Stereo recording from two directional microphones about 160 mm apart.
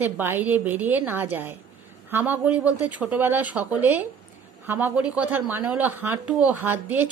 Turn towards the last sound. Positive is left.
turn(degrees=-10)  # may be behind; listen again after turning